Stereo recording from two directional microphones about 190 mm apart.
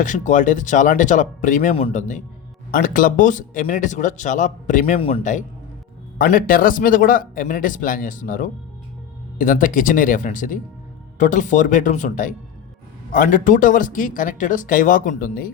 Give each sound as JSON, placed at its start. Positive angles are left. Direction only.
{"t": 0.0, "sound": "speech", "side_deg": 40}
{"t": 4.9, "sound": "speech", "side_deg": 30}